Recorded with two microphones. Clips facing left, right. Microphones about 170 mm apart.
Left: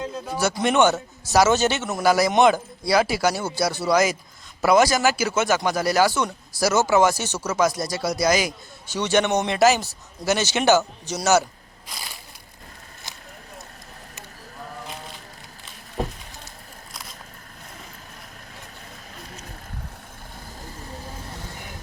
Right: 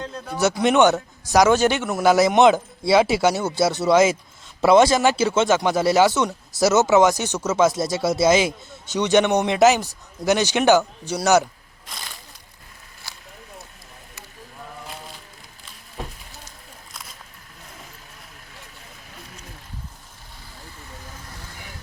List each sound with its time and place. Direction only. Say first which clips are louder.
0.0 s speech: left 2 dB; 5° left (ahead or behind)
0.3 s speech: right 3 dB; 20° right (ahead or behind)